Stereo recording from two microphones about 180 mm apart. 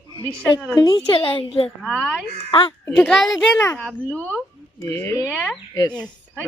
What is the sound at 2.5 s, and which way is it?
Speech, 30° left (ahead or behind).